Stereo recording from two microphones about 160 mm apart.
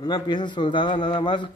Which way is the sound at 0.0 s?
30° left (ahead or behind).